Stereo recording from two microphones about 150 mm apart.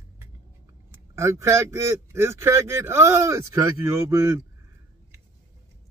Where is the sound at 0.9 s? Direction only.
20° right (ahead or behind).